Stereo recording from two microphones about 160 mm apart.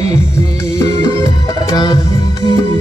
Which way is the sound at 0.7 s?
20° left (ahead or behind).